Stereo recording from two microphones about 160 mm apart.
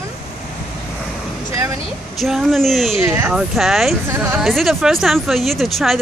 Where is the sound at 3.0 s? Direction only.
15° right (ahead or behind).